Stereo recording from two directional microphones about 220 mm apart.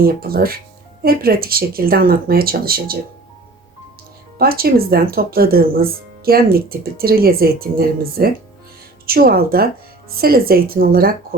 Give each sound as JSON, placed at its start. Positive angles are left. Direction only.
{"t": 0.0, "sound": "speech", "side_deg": -45}
{"t": 4.4, "sound": "speech", "side_deg": -45}